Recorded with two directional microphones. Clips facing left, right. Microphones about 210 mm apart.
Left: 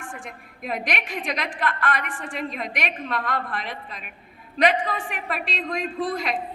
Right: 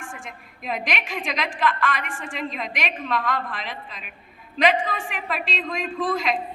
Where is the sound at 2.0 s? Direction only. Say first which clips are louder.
Even; 35° left (ahead or behind).